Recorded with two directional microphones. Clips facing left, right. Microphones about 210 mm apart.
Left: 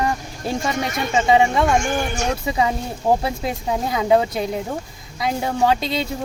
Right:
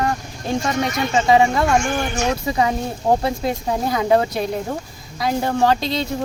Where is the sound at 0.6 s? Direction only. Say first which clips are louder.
Right 3 dB; centre (ahead or behind).